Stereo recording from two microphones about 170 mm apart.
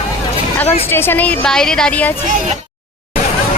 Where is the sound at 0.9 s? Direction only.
15° left (ahead or behind).